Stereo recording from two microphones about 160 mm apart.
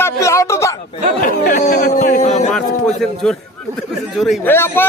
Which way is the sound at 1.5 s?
50° left (ahead or behind).